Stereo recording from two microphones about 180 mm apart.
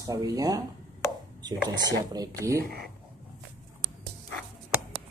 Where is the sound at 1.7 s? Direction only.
20° right (ahead or behind).